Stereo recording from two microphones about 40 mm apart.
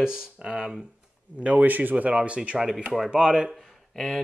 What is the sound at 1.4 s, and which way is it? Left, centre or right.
Speech, right.